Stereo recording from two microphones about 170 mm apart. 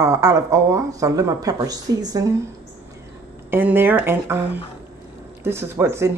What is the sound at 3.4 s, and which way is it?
A woman's voice, 15° right (ahead or behind).